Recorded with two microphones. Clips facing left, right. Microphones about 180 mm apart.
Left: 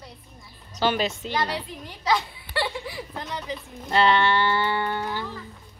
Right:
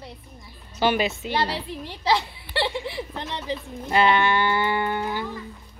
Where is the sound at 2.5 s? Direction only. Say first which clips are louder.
Right 2 dB; 25° right (ahead or behind).